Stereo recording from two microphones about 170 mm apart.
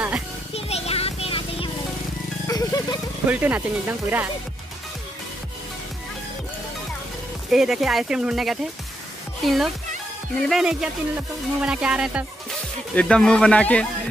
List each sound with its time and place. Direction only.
0.6 s music: 35° left (ahead or behind)
2.4 s music: 20° left (ahead or behind)
3.3 s speech: 10° right (ahead or behind)
7.5 s speech: centre (ahead or behind)
12.9 s speech: 5° left (ahead or behind)